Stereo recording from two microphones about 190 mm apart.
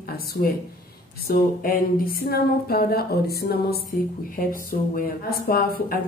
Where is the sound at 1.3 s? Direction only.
50° left (ahead or behind).